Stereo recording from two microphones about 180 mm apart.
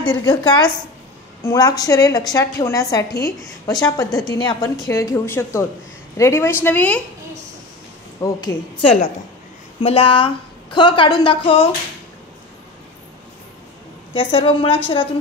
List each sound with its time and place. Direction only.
0.0 s a woman's voice: 25° left (ahead or behind)
1.4 s a woman's voice: 20° left (ahead or behind)
8.2 s a woman's voice: 20° left (ahead or behind)
14.1 s a woman's voice: 30° left (ahead or behind)